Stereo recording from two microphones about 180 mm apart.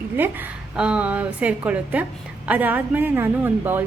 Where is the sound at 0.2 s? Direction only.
10° right (ahead or behind).